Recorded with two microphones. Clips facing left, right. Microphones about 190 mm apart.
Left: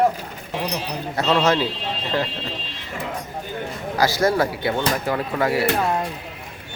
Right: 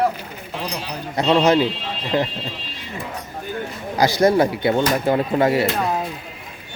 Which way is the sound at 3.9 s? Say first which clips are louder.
Right 4 dB; 20° right (ahead or behind).